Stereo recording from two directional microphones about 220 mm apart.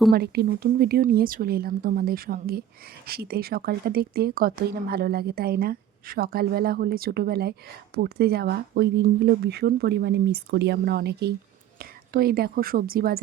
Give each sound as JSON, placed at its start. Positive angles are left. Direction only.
{"t": 0.1, "sound": "a woman's voice", "side_deg": -45}